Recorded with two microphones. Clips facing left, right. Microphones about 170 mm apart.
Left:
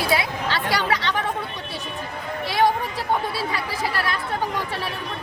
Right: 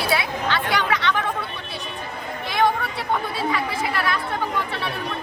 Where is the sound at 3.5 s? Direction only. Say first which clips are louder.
Right 2 dB; 40° left (ahead or behind).